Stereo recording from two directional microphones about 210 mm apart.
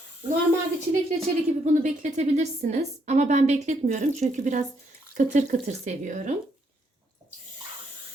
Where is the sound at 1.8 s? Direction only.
35° right (ahead or behind).